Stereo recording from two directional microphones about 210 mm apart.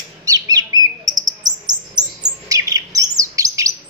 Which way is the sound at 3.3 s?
15° right (ahead or behind).